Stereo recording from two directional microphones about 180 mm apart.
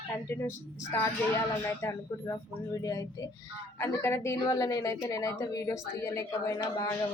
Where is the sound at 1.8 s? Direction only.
15° left (ahead or behind).